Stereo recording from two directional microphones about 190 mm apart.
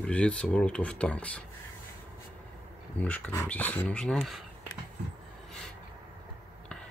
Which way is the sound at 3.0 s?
5° left (ahead or behind).